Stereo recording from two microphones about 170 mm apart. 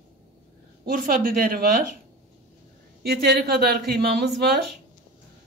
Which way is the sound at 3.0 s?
65° right (ahead or behind).